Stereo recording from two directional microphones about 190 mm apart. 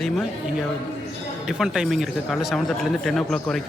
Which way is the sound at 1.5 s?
5° right (ahead or behind).